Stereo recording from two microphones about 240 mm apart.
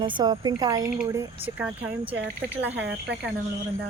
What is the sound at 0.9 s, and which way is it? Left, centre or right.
Speech, centre.